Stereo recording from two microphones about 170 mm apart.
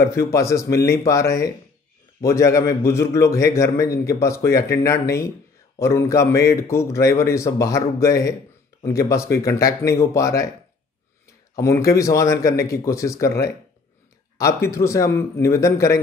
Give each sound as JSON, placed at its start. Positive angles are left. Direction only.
{"t": 0.0, "sound": "a man's voice", "side_deg": 15}
{"t": 11.5, "sound": "a man's voice", "side_deg": 15}